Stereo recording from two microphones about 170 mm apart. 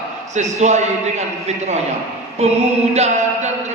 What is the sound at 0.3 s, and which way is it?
Speech, 45° right (ahead or behind).